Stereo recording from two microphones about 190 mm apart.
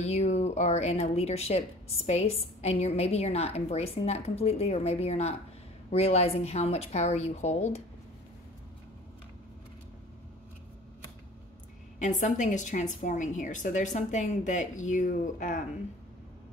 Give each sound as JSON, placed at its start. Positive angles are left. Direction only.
{"t": 0.0, "sound": "a woman's voice", "side_deg": 35}
{"t": 12.0, "sound": "a woman's voice", "side_deg": 40}